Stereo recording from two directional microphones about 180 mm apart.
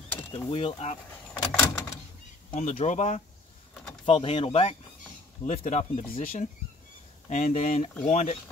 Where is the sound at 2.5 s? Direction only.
50° left (ahead or behind).